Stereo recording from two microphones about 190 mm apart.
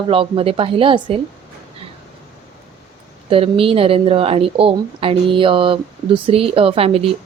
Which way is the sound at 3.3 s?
30° right (ahead or behind).